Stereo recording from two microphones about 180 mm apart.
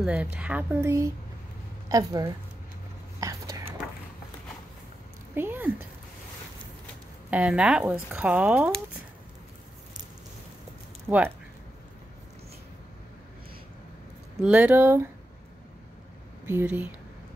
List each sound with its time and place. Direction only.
0.0 s a woman's voice: 5° right (ahead or behind)
3.2 s whispering: 20° right (ahead or behind)
5.3 s speech: 10° right (ahead or behind)
7.2 s speech: 5° right (ahead or behind)
11.1 s speech: 10° right (ahead or behind)
14.4 s speech: 10° right (ahead or behind)
16.4 s speech: 10° right (ahead or behind)